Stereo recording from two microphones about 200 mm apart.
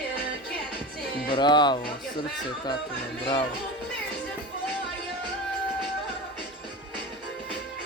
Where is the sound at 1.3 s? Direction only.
20° left (ahead or behind).